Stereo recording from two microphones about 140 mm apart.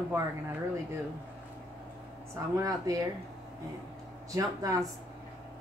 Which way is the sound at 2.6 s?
25° right (ahead or behind).